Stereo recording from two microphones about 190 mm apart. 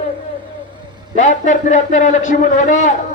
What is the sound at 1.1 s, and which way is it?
Speech, 40° left (ahead or behind).